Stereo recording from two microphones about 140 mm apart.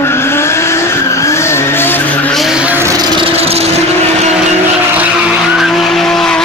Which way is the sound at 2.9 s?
35° right (ahead or behind).